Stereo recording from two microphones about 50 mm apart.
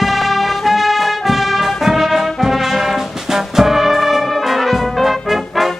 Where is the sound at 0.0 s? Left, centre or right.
Centre.